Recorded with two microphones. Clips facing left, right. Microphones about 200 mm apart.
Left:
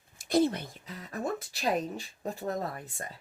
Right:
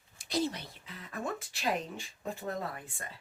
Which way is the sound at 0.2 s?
55° left (ahead or behind).